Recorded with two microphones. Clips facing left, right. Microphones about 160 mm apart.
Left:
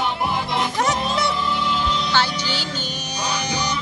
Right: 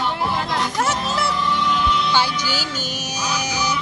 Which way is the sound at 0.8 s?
Centre (ahead or behind).